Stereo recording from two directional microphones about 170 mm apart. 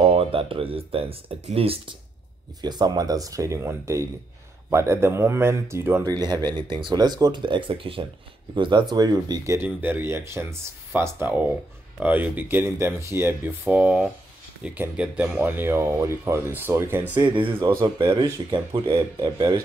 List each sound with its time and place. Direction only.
0.0 s speech: 35° right (ahead or behind); by 6.1 s 15° right (ahead or behind)
6.1 s speech: 25° right (ahead or behind)
17.1 s speech: 30° right (ahead or behind)
17.6 s speech: 15° right (ahead or behind)
17.9 s speech: 25° right (ahead or behind)